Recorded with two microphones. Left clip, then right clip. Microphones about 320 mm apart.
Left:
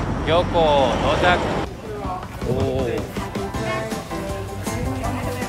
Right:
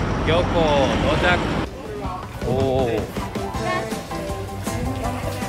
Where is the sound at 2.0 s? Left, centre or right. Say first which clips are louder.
Even; centre.